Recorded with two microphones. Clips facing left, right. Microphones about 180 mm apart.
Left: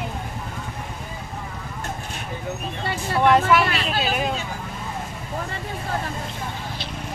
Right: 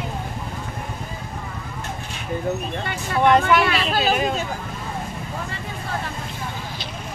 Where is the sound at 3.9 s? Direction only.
45° right (ahead or behind).